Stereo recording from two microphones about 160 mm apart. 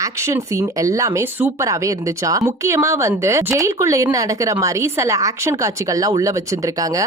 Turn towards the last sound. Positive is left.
turn(degrees=-20)  # may be behind; listen again after turning